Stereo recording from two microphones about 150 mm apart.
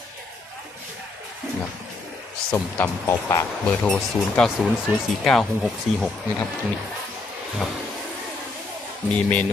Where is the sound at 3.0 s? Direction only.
15° left (ahead or behind); by 6.1 s centre (ahead or behind).